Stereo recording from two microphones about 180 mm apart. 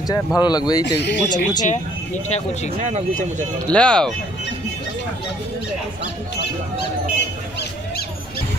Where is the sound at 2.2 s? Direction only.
40° left (ahead or behind).